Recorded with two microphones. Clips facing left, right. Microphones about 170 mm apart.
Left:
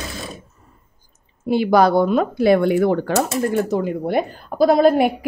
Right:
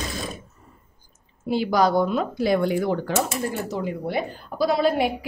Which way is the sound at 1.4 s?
60° left (ahead or behind).